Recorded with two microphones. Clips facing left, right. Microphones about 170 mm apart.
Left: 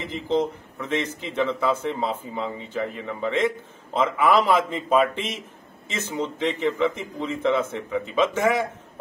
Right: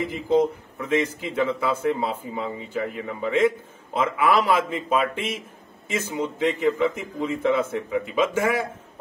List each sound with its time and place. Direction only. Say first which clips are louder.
0.0 s a man's voice: right 3 dB; 10° right (ahead or behind)